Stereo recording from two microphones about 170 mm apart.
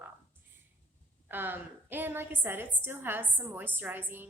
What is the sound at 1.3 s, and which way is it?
A woman's voice, 10° right (ahead or behind).